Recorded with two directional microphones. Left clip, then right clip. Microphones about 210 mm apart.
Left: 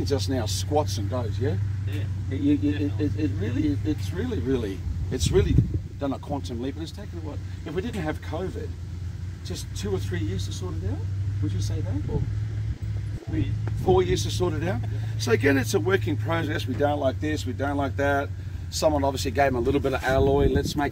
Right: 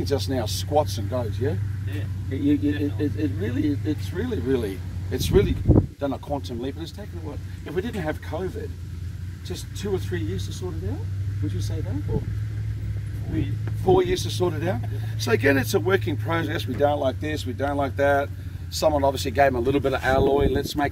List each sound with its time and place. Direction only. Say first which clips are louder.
0.0 s speech: right 2 dB; 15° right (ahead or behind)
9.5 s speech: right 2 dB; 10° right (ahead or behind)
13.4 s speech: even; 10° right (ahead or behind)